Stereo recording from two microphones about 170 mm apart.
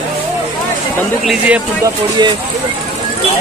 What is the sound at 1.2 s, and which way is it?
Speech, 10° right (ahead or behind).